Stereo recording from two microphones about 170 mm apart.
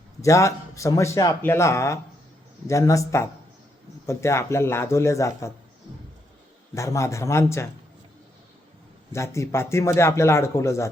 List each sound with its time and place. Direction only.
0.2 s a man's voice: 20° left (ahead or behind)
6.7 s a man's voice: 15° left (ahead or behind)
9.1 s a man's voice: 15° left (ahead or behind)